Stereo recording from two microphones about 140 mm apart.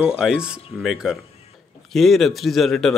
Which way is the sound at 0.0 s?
5° right (ahead or behind).